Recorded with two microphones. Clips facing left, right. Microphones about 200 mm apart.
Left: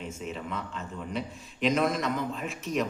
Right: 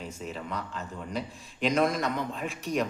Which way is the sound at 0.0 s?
35° right (ahead or behind).